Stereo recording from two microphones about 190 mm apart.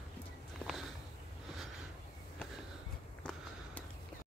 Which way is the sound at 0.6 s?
5° left (ahead or behind).